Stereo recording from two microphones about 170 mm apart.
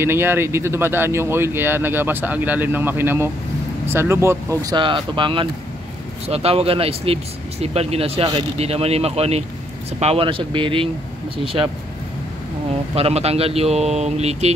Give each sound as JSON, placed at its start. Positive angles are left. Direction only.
{"t": 0.0, "sound": "speech", "side_deg": -15}
{"t": 12.9, "sound": "speech", "side_deg": -35}